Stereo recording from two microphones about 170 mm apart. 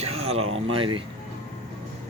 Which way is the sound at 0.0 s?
40° right (ahead or behind).